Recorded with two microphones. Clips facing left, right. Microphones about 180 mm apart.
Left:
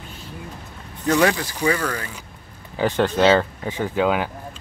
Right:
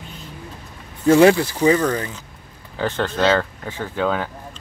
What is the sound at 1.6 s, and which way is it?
Speech, 35° right (ahead or behind).